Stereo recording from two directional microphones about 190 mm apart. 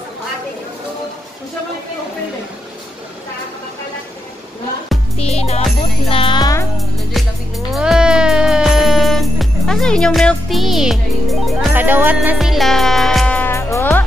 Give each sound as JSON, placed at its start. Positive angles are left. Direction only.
{"t": 5.1, "sound": "music", "side_deg": 35}
{"t": 6.8, "sound": "music", "side_deg": 0}